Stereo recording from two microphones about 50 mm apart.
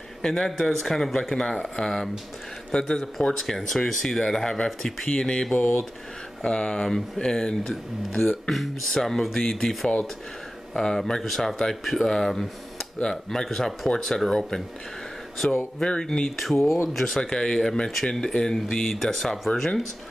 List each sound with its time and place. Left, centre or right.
0.2 s speech: centre
16.3 s speech: centre